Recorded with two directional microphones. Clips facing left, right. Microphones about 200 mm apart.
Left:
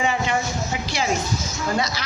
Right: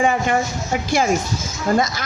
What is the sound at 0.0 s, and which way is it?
Speech, 50° right (ahead or behind).